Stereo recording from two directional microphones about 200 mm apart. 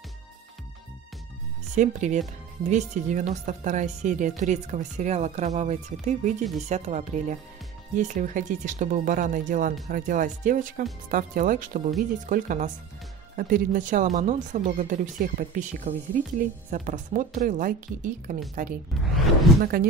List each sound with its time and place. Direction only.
1.8 s speech: 35° right (ahead or behind)